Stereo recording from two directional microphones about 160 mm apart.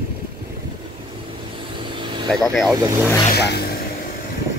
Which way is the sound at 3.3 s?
90° left.